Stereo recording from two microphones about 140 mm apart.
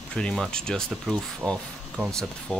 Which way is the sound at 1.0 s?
5° right (ahead or behind).